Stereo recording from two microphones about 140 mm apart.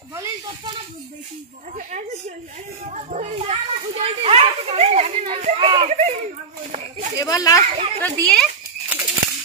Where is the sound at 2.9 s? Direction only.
55° right (ahead or behind).